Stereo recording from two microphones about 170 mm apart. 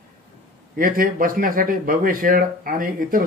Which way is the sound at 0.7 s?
55° right (ahead or behind).